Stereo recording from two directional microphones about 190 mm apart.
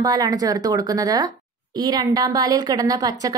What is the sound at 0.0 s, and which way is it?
A woman's voice, 20° right (ahead or behind).